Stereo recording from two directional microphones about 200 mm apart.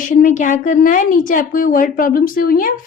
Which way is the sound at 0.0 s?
40° left (ahead or behind).